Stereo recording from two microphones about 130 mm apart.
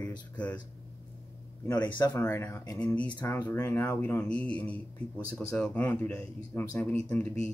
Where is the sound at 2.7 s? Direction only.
10° left (ahead or behind).